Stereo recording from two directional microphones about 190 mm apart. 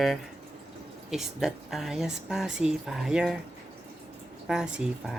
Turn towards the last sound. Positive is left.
turn(degrees=-5)  # may be behind; listen again after turning